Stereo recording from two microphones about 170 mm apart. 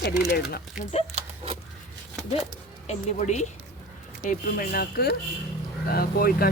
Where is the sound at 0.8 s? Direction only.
40° left (ahead or behind).